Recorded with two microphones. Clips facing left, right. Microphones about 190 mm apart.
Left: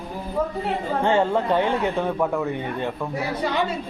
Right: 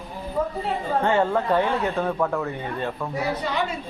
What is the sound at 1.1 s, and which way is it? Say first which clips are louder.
Speech: left 2 dB; 15° left (ahead or behind).